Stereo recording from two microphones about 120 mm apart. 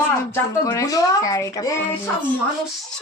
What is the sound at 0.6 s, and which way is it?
A woman's voice, 25° left (ahead or behind).